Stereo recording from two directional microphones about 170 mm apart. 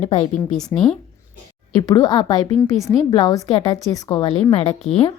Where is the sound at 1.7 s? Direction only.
25° left (ahead or behind).